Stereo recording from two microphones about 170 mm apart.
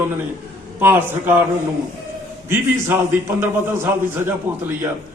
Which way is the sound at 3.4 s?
15° right (ahead or behind).